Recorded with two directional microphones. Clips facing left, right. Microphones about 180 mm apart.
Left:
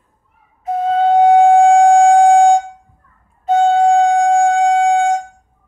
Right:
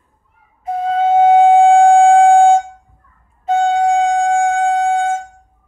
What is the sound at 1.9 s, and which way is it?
Siren, centre (ahead or behind).